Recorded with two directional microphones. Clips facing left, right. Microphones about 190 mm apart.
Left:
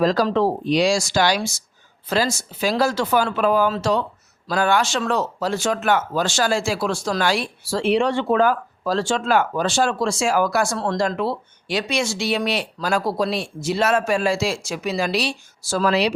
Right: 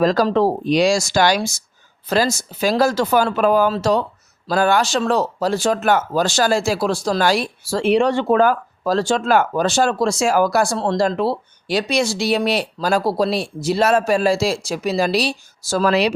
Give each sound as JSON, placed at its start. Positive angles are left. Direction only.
{"t": 0.0, "sound": "speech", "side_deg": -45}